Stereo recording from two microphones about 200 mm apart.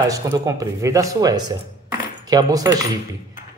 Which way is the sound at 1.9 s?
20° right (ahead or behind).